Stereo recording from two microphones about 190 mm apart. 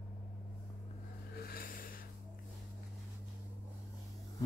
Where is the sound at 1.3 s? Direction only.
50° left (ahead or behind).